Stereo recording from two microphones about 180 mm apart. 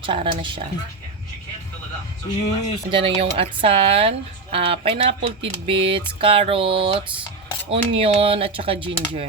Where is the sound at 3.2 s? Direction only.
30° right (ahead or behind).